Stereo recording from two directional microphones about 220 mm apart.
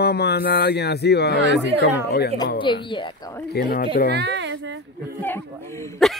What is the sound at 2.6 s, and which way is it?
Speech, 20° left (ahead or behind).